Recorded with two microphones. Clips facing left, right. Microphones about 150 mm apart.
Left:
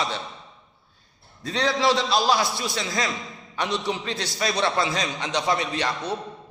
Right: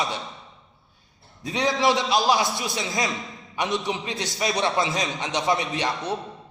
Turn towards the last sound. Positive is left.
turn(degrees=-20)  # may be behind; listen again after turning